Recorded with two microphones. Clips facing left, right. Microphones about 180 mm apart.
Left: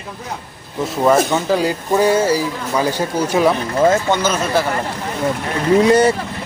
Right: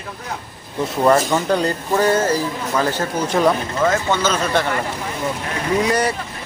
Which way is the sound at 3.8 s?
25° left (ahead or behind).